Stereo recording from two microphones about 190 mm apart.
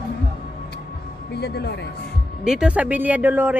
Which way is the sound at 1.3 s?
60° left (ahead or behind).